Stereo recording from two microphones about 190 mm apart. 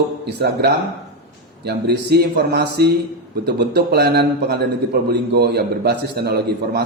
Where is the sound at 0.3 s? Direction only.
60° right (ahead or behind).